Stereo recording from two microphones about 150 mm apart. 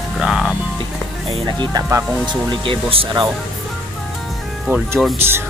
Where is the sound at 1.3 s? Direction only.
30° right (ahead or behind).